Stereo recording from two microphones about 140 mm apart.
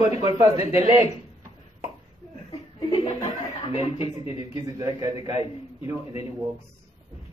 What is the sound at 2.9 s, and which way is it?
Chuckle, 45° left (ahead or behind).